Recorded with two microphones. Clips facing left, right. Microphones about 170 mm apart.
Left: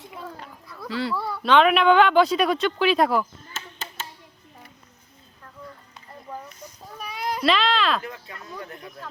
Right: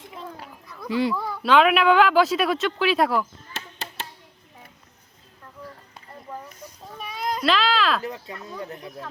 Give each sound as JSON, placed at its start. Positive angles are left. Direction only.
{"t": 0.9, "sound": "speech", "side_deg": -15}
{"t": 1.4, "sound": "speech", "side_deg": -5}
{"t": 7.0, "sound": "a sound", "side_deg": 0}
{"t": 8.1, "sound": "speech", "side_deg": -20}